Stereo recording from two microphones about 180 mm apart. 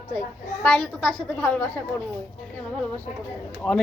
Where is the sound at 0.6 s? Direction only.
5° left (ahead or behind).